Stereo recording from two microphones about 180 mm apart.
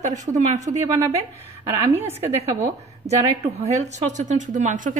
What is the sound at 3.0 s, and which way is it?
A woman's voice, 35° right (ahead or behind).